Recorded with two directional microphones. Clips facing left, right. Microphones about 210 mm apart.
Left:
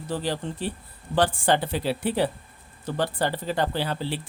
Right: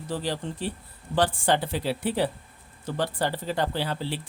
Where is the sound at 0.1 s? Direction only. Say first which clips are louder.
Left 2 dB; 50° left (ahead or behind).